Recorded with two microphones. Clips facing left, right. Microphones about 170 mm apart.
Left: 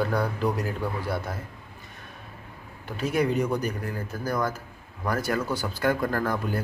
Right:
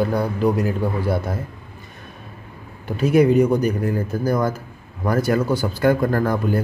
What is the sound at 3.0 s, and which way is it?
Speech, 10° right (ahead or behind).